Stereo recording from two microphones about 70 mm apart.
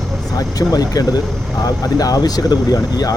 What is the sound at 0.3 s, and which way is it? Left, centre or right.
Speech, left.